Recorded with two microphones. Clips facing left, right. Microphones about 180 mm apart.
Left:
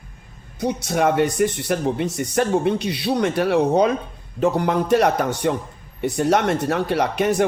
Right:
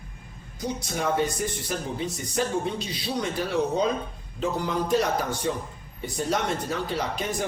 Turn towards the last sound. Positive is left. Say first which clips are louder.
# left 10 dB
turn(degrees=70)  # may be behind; listen again after turning